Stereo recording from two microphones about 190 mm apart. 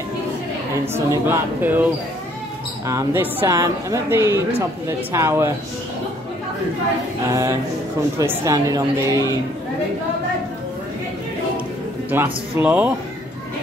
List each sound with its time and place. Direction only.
0.9 s speech: 15° right (ahead or behind)
2.9 s speech: 15° right (ahead or behind)
7.2 s speech: 15° right (ahead or behind)
12.1 s speech: 10° right (ahead or behind)